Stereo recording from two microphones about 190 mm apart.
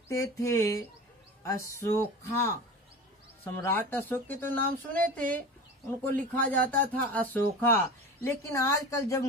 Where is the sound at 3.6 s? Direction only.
10° left (ahead or behind).